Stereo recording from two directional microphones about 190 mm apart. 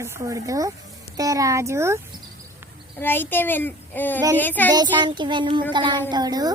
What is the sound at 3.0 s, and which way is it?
A child's voice, 10° left (ahead or behind).